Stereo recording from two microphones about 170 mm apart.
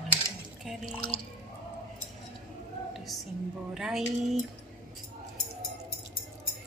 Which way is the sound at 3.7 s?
5° right (ahead or behind).